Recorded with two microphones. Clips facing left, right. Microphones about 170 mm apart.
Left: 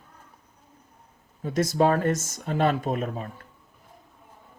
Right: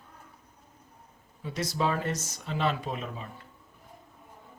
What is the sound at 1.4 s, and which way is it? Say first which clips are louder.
Speech: left 8 dB; 45° left (ahead or behind).